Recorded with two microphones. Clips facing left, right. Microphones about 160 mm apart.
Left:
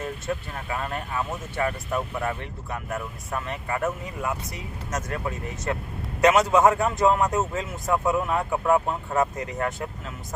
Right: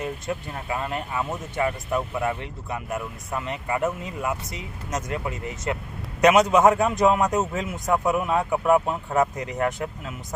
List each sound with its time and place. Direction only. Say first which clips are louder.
0.0 s speech: right 1 dB; 20° right (ahead or behind)